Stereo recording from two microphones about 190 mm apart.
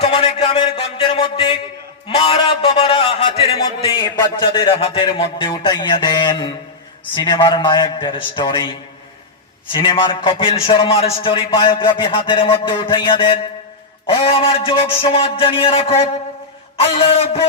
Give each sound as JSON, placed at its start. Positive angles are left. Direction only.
{"t": 0.0, "sound": "music", "side_deg": 30}
{"t": 2.0, "sound": "a man's voice", "side_deg": 30}
{"t": 16.8, "sound": "a sound", "side_deg": 30}